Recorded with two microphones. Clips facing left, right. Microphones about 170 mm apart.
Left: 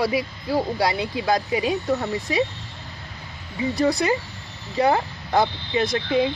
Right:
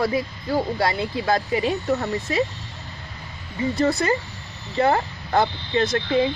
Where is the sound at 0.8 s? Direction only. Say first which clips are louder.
Even; 15° left (ahead or behind).